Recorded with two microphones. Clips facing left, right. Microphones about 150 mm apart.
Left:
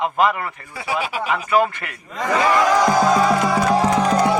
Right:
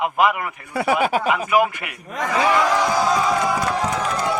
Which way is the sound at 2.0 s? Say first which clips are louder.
Right 2 dB; 70° right (ahead or behind).